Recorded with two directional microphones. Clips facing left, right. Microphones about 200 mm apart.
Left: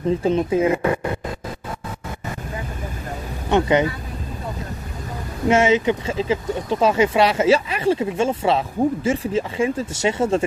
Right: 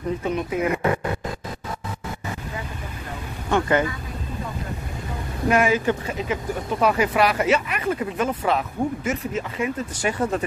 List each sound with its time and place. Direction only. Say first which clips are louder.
0.2 s speech: left 6 dB; 30° left (ahead or behind)
3.4 s speech: left 3 dB; 20° left (ahead or behind)
5.5 s speech: left 3 dB; 25° left (ahead or behind)